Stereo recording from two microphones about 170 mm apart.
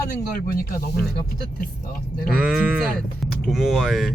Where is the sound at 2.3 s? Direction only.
5° right (ahead or behind).